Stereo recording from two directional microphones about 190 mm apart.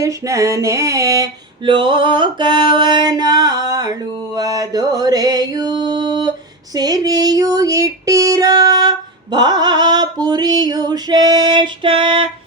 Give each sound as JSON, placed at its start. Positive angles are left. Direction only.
{"t": 0.0, "sound": "female singing", "side_deg": -15}
{"t": 4.4, "sound": "mantra", "side_deg": -20}
{"t": 6.7, "sound": "female singing", "side_deg": -20}